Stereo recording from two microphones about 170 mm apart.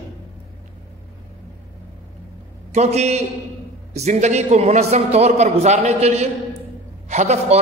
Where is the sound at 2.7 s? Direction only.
40° right (ahead or behind).